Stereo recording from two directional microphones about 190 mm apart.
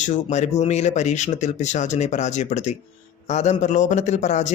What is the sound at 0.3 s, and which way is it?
Speech, 35° left (ahead or behind).